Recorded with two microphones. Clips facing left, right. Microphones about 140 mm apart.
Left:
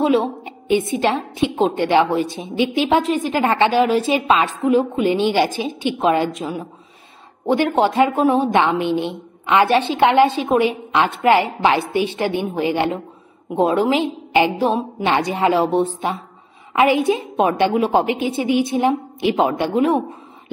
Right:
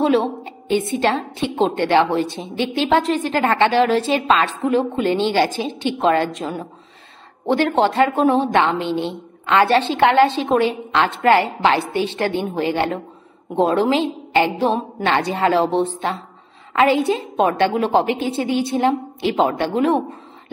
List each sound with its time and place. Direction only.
0.0 s a woman's voice: 10° left (ahead or behind)